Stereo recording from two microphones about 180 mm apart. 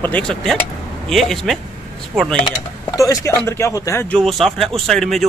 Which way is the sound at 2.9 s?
20° left (ahead or behind).